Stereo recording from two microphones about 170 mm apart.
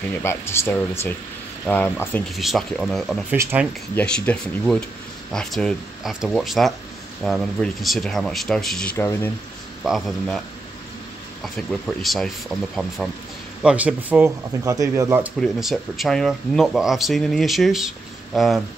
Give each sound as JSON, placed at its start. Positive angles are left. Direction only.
{"t": 0.2, "sound": "speech", "side_deg": 15}
{"t": 2.3, "sound": "speech", "side_deg": 0}
{"t": 3.3, "sound": "speech", "side_deg": -10}
{"t": 3.9, "sound": "speech", "side_deg": 5}
{"t": 8.9, "sound": "speech", "side_deg": 15}
{"t": 9.8, "sound": "speech", "side_deg": 0}
{"t": 11.4, "sound": "speech", "side_deg": 0}
{"t": 14.6, "sound": "speech", "side_deg": -20}
{"t": 15.3, "sound": "speech", "side_deg": 0}